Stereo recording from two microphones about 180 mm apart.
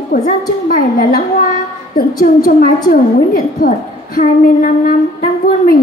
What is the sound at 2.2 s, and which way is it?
A woman's voice, 50° left (ahead or behind).